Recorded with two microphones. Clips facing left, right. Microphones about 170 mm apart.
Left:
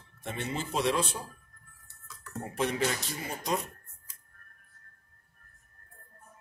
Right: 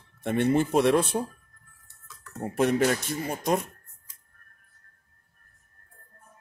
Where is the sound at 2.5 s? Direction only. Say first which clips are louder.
Right 7 dB; 50° right (ahead or behind).